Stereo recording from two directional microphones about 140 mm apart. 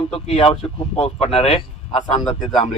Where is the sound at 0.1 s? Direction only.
45° left (ahead or behind).